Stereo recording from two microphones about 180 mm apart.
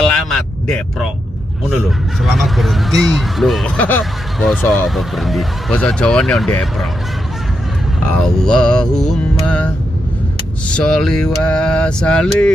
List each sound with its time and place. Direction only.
0.0 s vehicle: 5° left (ahead or behind)
1.9 s speech: centre (ahead or behind)
8.2 s speech: 5° left (ahead or behind)
10.7 s speech: 5° left (ahead or behind)